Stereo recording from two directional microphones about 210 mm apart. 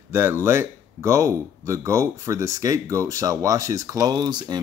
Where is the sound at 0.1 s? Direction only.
10° right (ahead or behind).